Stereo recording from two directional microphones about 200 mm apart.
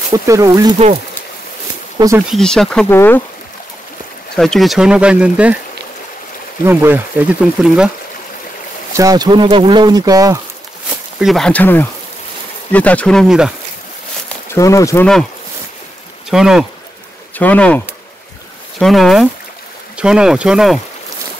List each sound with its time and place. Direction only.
0.1 s speech: 15° right (ahead or behind)
2.0 s speech: 15° right (ahead or behind)
2.2 s speech: centre (ahead or behind)
4.4 s speech: centre (ahead or behind)
6.6 s speech: 10° right (ahead or behind)
8.9 s speech: 20° right (ahead or behind)
11.1 s speech: centre (ahead or behind)
14.5 s speech: 15° left (ahead or behind)
16.3 s speech: centre (ahead or behind)